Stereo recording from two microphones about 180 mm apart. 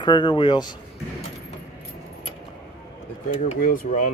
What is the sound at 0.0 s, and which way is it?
Speech, 25° left (ahead or behind).